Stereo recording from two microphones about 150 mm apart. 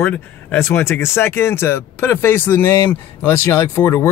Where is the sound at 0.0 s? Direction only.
10° left (ahead or behind).